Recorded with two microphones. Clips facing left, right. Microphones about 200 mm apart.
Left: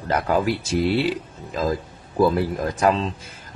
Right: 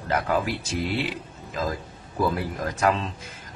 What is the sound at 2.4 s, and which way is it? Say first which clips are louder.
Speech: left 5 dB; 30° left (ahead or behind).